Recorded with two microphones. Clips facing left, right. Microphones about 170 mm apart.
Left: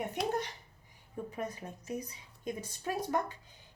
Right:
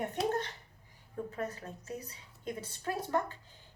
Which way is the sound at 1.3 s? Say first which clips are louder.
Right 1 dB; 15° left (ahead or behind).